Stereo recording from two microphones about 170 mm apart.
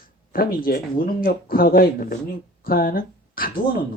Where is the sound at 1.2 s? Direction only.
60° left (ahead or behind).